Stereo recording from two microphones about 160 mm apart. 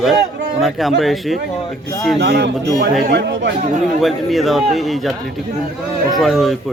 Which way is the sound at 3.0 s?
80° right.